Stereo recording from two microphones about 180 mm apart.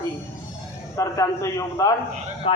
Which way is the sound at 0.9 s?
15° left (ahead or behind).